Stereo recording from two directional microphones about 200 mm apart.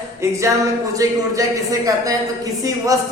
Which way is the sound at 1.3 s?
15° right (ahead or behind).